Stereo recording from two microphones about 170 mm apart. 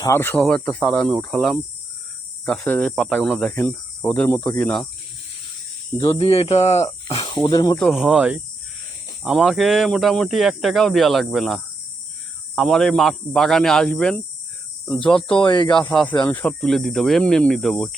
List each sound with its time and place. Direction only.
0.0 s speech: 15° left (ahead or behind)
6.1 s speech: 35° left (ahead or behind)
6.8 s speech: 25° left (ahead or behind)
7.8 s speech: centre (ahead or behind)
15.4 s speech: 25° left (ahead or behind)
15.8 s speech: 5° left (ahead or behind)